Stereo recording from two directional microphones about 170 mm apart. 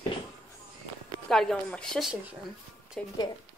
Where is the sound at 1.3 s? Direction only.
5° left (ahead or behind).